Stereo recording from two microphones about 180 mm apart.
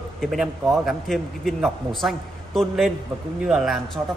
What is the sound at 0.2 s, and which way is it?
Speech, centre (ahead or behind).